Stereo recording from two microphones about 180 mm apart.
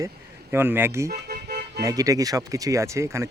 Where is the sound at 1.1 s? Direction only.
60° right (ahead or behind).